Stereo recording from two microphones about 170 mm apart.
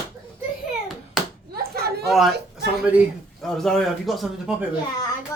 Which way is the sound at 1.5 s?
65° right (ahead or behind).